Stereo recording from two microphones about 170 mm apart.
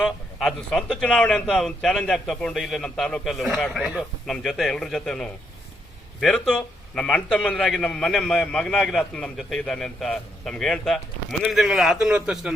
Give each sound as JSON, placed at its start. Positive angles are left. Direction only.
{"t": 0.0, "sound": "a man's voice", "side_deg": 0}